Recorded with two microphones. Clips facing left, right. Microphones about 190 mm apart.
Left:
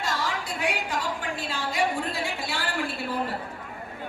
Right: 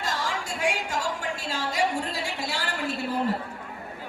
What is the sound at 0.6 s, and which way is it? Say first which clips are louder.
A woman's voice: right 1 dB; 45° right (ahead or behind).